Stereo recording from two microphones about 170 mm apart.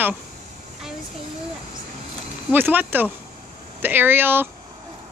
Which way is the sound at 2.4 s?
10° right (ahead or behind).